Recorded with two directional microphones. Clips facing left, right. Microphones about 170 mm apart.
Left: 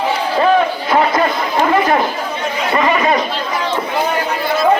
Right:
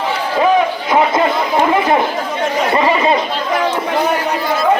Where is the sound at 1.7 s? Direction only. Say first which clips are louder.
Even; 20° right (ahead or behind).